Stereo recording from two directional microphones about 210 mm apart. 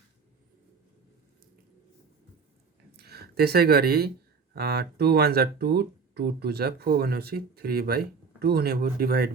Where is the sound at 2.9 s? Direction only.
50° right (ahead or behind).